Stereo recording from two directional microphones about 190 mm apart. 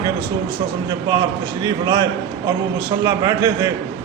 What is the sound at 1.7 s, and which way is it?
A man's voice, 20° right (ahead or behind).